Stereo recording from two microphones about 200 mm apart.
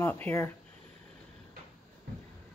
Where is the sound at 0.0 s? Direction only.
10° left (ahead or behind).